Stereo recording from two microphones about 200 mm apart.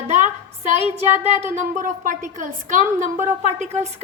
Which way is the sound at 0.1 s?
35° right (ahead or behind).